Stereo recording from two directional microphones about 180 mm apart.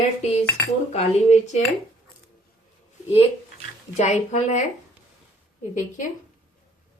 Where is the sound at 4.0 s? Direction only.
40° left (ahead or behind).